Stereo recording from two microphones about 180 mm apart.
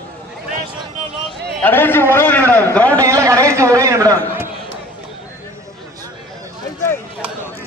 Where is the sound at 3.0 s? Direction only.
15° right (ahead or behind).